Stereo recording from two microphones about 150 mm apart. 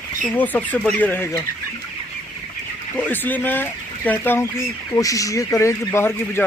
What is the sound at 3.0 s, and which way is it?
Speech, 10° left (ahead or behind).